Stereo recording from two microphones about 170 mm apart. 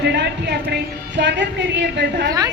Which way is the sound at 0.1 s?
75° right (ahead or behind).